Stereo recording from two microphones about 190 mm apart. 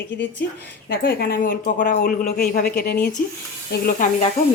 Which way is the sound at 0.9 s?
50° left (ahead or behind).